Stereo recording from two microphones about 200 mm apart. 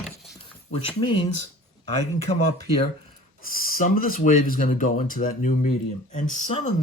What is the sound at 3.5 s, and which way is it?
Speech, 45° left (ahead or behind).